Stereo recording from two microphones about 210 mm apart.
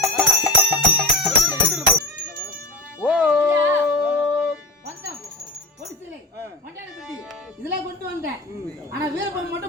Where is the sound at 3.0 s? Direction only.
5° right (ahead or behind).